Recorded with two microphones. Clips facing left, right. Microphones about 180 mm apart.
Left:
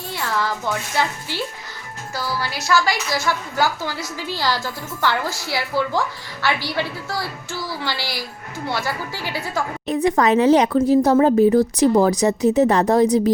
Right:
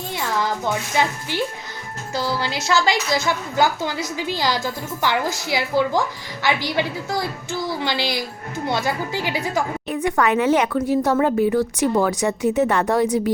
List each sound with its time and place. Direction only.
0.1 s a woman's voice: 15° right (ahead or behind)
9.9 s speech: 35° left (ahead or behind)